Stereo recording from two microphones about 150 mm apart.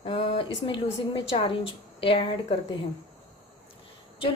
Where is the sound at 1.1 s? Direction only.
30° left (ahead or behind).